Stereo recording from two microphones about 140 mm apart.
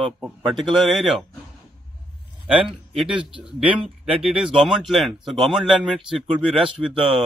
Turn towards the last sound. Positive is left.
turn(degrees=-40)  # may be behind; listen again after turning